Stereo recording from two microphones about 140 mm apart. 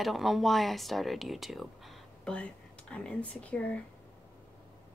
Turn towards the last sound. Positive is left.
turn(degrees=10)  # may be behind; listen again after turning